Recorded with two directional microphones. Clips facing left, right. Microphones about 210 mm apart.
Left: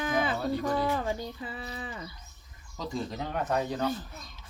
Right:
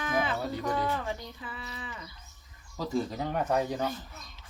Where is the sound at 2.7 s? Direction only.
5° right (ahead or behind).